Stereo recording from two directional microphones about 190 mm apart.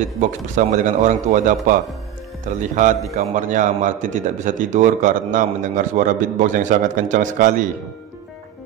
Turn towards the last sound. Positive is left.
turn(degrees=-40)  # may be behind; listen again after turning